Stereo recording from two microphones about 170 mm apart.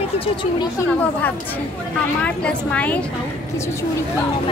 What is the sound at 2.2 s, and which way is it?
Speech, 10° left (ahead or behind).